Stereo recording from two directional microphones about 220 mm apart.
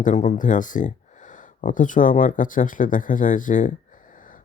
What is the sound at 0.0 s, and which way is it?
Speech, 35° left (ahead or behind).